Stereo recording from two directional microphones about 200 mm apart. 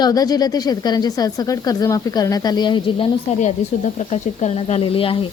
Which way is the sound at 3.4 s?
35° left (ahead or behind).